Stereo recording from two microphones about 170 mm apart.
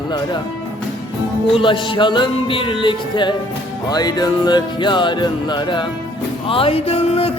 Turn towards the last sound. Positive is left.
turn(degrees=35)  # may be behind; listen again after turning